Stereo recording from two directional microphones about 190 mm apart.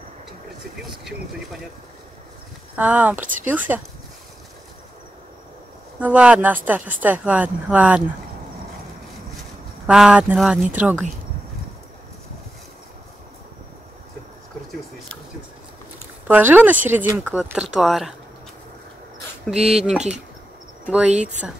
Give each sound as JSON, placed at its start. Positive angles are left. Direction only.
{"t": 2.7, "sound": "speech", "side_deg": -5}
{"t": 5.9, "sound": "speech", "side_deg": -5}
{"t": 9.8, "sound": "speech", "side_deg": -5}
{"t": 16.3, "sound": "speech", "side_deg": -10}
{"t": 19.5, "sound": "speech", "side_deg": 5}
{"t": 19.9, "sound": "speech", "side_deg": -5}
{"t": 21.1, "sound": "speech", "side_deg": -40}